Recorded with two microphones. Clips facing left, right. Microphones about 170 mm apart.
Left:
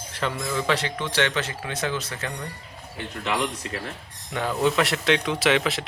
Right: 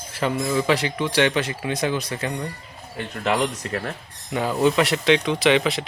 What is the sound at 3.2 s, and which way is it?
Speech, 55° right (ahead or behind).